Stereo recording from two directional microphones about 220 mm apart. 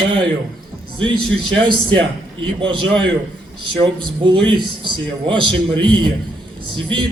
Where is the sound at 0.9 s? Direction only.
20° right (ahead or behind).